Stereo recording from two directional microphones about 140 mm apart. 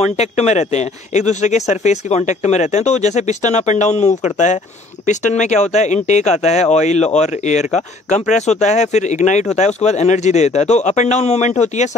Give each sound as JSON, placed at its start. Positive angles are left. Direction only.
{"t": 0.2, "sound": "speech", "side_deg": 55}